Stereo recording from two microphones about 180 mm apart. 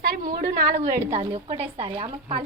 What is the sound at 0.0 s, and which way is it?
Speech, 55° right (ahead or behind).